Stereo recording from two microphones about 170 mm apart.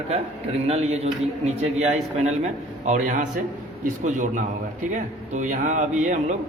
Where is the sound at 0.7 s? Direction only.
40° right (ahead or behind).